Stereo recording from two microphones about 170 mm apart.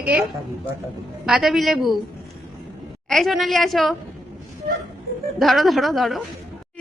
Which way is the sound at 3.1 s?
Centre (ahead or behind).